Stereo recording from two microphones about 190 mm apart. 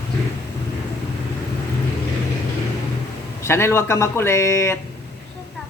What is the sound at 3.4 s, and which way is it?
Speech, 15° left (ahead or behind).